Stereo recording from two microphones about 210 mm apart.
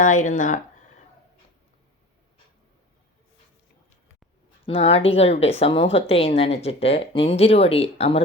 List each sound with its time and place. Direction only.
0.0 s speech: 35° left (ahead or behind)
4.6 s speech: 30° left (ahead or behind)